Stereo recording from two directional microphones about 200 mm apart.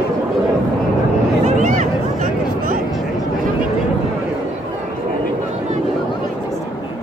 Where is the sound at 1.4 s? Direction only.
40° right (ahead or behind).